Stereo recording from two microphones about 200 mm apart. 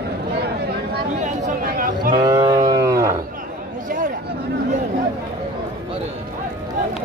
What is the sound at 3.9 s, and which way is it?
Chatter, 45° right (ahead or behind).